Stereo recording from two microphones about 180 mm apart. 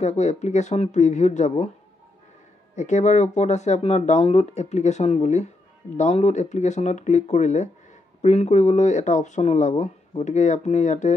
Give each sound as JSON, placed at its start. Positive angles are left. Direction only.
{"t": 0.0, "sound": "speech", "side_deg": 40}
{"t": 2.7, "sound": "speech", "side_deg": 40}